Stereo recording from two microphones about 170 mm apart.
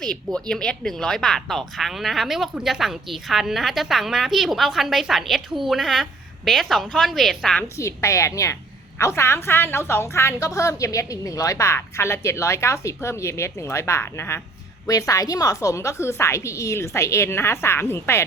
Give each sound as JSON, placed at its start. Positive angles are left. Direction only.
{"t": 0.0, "sound": "speech", "side_deg": 5}
{"t": 7.8, "sound": "a woman's voice", "side_deg": 15}